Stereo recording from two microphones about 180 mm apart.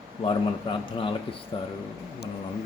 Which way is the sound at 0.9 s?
30° left (ahead or behind).